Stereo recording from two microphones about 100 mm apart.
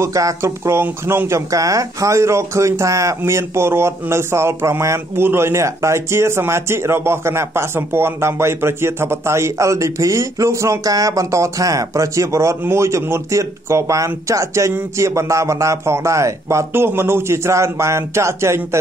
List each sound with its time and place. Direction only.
0.0 s speech: 30° right (ahead or behind)